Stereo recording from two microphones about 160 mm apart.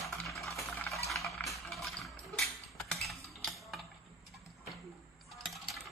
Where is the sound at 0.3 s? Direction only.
20° left (ahead or behind).